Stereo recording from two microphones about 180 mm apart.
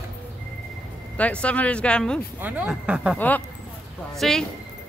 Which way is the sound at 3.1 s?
10° left (ahead or behind).